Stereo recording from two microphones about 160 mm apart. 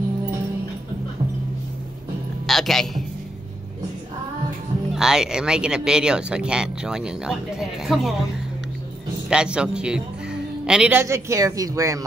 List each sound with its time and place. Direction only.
2.4 s a sound: centre (ahead or behind)
4.9 s speech: 5° right (ahead or behind)
9.3 s speech: 5° right (ahead or behind)